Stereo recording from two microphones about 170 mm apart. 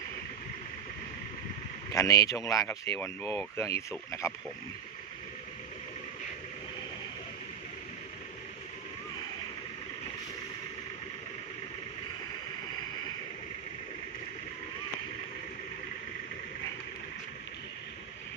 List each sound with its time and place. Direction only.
1.9 s speech: 20° left (ahead or behind)